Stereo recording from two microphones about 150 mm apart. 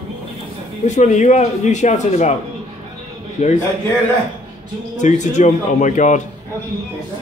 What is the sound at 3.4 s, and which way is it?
Speech, 50° left (ahead or behind).